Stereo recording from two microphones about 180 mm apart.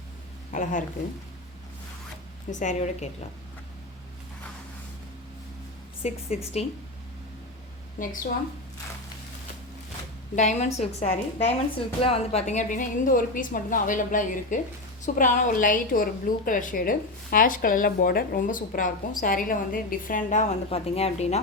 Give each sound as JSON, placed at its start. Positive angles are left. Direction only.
{"t": 0.5, "sound": "a woman's voice", "side_deg": 45}
{"t": 2.5, "sound": "a woman's voice", "side_deg": 45}
{"t": 6.0, "sound": "a woman's voice", "side_deg": 35}
{"t": 8.0, "sound": "a woman's voice", "side_deg": 45}
{"t": 10.3, "sound": "a woman's voice", "side_deg": 40}